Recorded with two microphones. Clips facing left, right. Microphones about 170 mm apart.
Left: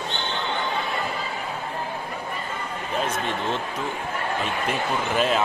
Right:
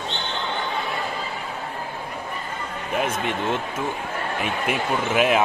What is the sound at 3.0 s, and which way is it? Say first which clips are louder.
Speech: right 2 dB; 15° right (ahead or behind).